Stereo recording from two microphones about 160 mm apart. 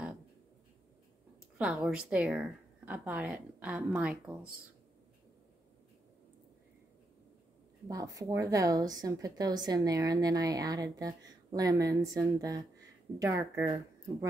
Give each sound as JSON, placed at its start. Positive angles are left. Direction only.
{"t": 1.6, "sound": "a woman's voice", "side_deg": -5}
{"t": 7.9, "sound": "a woman's voice", "side_deg": -20}